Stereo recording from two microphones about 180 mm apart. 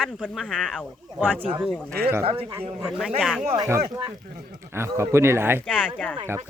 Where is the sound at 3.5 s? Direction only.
15° right (ahead or behind).